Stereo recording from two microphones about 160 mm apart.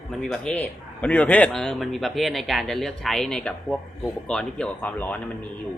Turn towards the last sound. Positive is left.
turn(degrees=10)  # may be behind; listen again after turning